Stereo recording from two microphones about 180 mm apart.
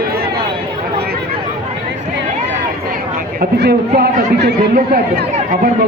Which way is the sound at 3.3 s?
60° right (ahead or behind).